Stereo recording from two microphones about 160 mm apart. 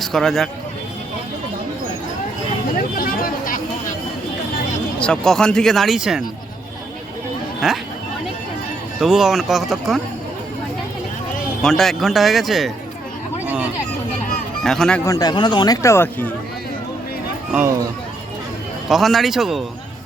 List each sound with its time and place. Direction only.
0.0 s speech: 5° left (ahead or behind)
3.0 s vehicle: 65° left (ahead or behind)
4.9 s speech: 5° left (ahead or behind)
7.6 s speech: 5° right (ahead or behind)
9.0 s speech: 5° right (ahead or behind)
11.6 s speech: 5° left (ahead or behind)
13.4 s a sound: 10° right (ahead or behind)
14.6 s speech: 5° left (ahead or behind)
15.0 s speech: 20° left (ahead or behind)
18.9 s speech: centre (ahead or behind)